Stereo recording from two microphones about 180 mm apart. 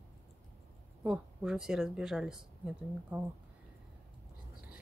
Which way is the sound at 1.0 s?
5° right (ahead or behind).